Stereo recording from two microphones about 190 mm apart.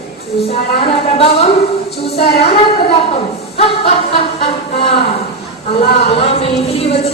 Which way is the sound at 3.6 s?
30° left (ahead or behind).